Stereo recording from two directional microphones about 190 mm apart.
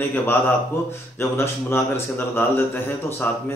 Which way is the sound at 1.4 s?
10° left (ahead or behind).